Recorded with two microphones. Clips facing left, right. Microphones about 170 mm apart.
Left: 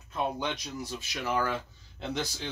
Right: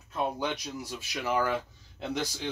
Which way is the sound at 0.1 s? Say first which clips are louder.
Right 1 dB; 5° right (ahead or behind).